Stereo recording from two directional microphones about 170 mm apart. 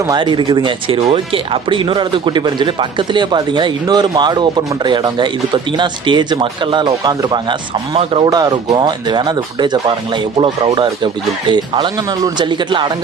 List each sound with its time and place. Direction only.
0.1 s speech: 25° right (ahead or behind)